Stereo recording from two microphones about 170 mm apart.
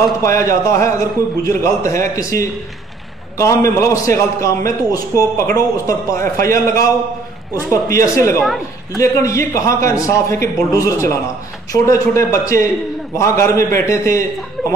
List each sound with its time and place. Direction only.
0.2 s a man's voice: 15° left (ahead or behind)